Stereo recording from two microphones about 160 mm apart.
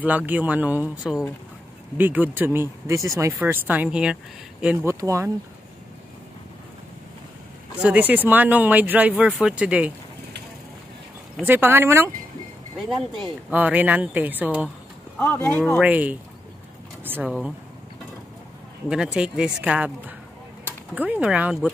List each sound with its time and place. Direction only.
0.0 s speech: 10° right (ahead or behind)
4.7 s speech: 20° right (ahead or behind)
7.8 s speech: 10° right (ahead or behind)
11.4 s speech: 15° right (ahead or behind)
15.1 s speech: 10° left (ahead or behind)
15.8 s speech: 10° right (ahead or behind)
18.9 s speech: 5° right (ahead or behind)